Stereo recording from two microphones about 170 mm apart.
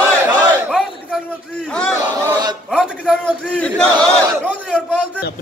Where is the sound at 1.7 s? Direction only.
5° left (ahead or behind).